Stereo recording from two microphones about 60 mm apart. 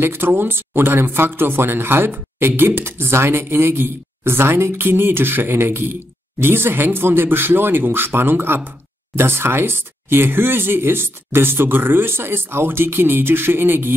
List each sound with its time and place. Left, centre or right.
0.0 s speech: right